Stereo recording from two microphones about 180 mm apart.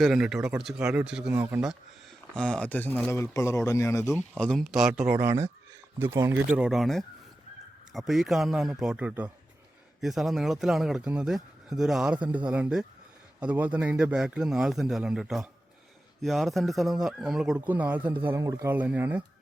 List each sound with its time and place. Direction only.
0.0 s speech: centre (ahead or behind)
0.8 s speech: 15° right (ahead or behind)
1.0 s speech: 5° right (ahead or behind)
2.3 s speech: 5° left (ahead or behind)
4.1 s speech: 5° left (ahead or behind)